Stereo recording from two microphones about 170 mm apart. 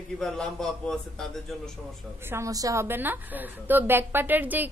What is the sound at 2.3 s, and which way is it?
A woman's voice, 20° right (ahead or behind).